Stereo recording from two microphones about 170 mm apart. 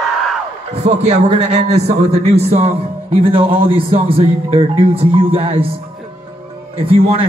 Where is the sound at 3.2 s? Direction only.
30° right (ahead or behind).